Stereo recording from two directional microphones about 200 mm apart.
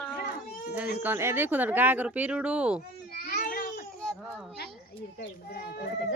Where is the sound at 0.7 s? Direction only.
10° right (ahead or behind).